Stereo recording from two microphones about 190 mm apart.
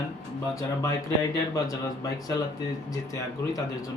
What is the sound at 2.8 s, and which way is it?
Speech, 20° left (ahead or behind).